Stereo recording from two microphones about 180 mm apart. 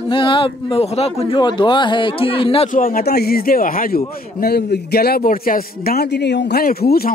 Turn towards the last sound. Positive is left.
turn(degrees=60)  # may be behind; listen again after turning